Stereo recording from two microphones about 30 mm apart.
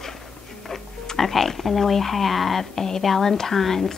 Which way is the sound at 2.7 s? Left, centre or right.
Centre.